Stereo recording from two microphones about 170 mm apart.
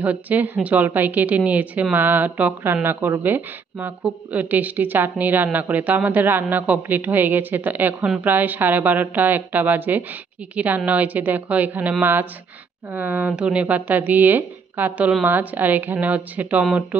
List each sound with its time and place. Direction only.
0.0 s a woman's voice: 10° right (ahead or behind)